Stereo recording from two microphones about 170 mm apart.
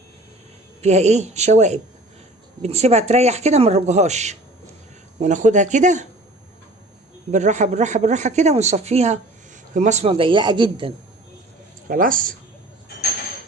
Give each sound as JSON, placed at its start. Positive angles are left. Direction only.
{"t": 0.8, "sound": "speech", "side_deg": -40}
{"t": 7.3, "sound": "speech", "side_deg": -45}
{"t": 11.9, "sound": "speech", "side_deg": -55}